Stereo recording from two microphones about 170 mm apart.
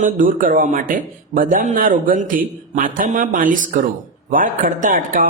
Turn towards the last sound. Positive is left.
turn(degrees=-50)  # may be behind; listen again after turning